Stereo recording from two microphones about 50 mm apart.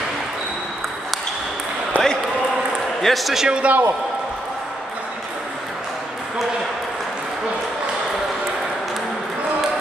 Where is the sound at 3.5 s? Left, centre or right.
Right.